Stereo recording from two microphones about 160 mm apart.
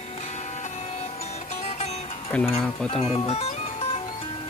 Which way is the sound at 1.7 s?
40° left (ahead or behind).